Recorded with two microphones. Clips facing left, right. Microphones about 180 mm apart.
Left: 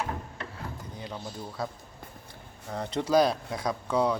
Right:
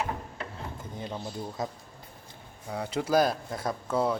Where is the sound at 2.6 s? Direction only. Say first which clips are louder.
Even; 10° right (ahead or behind).